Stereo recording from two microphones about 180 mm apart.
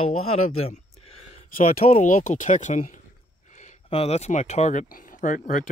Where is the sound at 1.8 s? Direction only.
40° left (ahead or behind).